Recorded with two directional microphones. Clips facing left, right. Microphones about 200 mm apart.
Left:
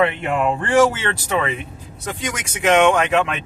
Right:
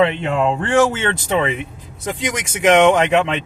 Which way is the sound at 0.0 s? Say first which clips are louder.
Right 2 dB; 25° right (ahead or behind).